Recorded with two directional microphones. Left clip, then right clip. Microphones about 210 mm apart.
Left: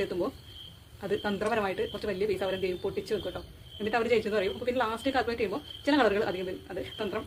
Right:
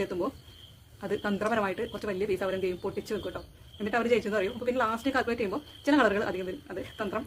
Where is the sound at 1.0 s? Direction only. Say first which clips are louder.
Even; 15° right (ahead or behind).